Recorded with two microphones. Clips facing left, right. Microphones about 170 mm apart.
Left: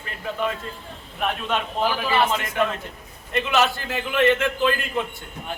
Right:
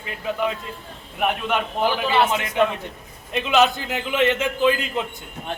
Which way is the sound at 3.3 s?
15° right (ahead or behind).